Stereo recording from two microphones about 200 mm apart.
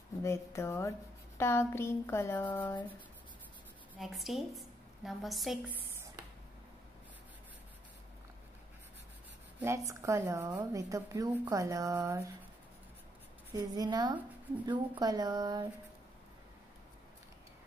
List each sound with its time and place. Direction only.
0.2 s speech: 15° left (ahead or behind)
3.9 s a woman's voice: centre (ahead or behind)
9.6 s a woman's voice: 15° right (ahead or behind)
13.6 s a woman's voice: 20° right (ahead or behind)